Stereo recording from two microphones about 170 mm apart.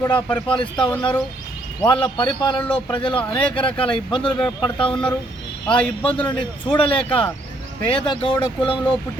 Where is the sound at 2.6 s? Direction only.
10° left (ahead or behind).